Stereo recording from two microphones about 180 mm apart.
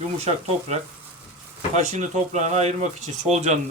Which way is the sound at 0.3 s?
35° right (ahead or behind).